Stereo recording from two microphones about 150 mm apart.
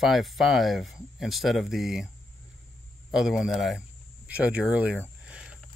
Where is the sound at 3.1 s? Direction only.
5° right (ahead or behind).